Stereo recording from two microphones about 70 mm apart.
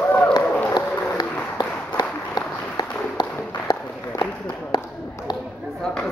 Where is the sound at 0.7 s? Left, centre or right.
Left.